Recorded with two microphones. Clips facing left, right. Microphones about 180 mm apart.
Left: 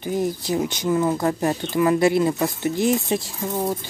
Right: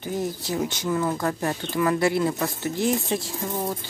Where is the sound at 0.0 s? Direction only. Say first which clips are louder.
Left 4 dB; 15° left (ahead or behind).